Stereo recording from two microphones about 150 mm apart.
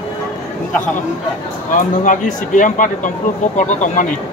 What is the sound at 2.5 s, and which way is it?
Speech, 60° left (ahead or behind).